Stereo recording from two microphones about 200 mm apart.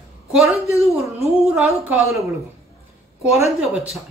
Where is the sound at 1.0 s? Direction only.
5° right (ahead or behind).